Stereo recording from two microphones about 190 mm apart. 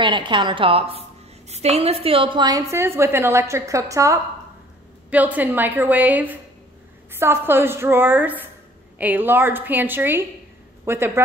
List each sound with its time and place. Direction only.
0.0 s a woman's voice: 25° right (ahead or behind)